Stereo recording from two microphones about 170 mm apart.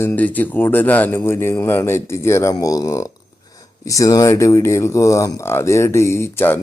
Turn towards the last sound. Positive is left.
turn(degrees=15)  # may be behind; listen again after turning